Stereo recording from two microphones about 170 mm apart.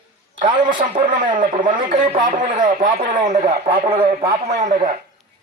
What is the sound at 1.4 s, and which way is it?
A man's voice, 50° right (ahead or behind).